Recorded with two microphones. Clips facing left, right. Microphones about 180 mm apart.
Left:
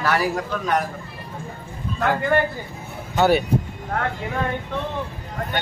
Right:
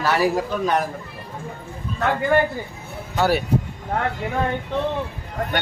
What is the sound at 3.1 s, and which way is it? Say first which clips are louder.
Speech: left 2 dB; centre (ahead or behind).